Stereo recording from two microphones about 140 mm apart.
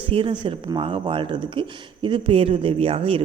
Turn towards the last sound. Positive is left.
turn(degrees=-40)  # may be behind; listen again after turning